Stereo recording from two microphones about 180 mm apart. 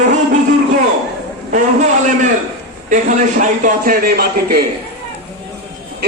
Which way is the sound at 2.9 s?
45° right (ahead or behind).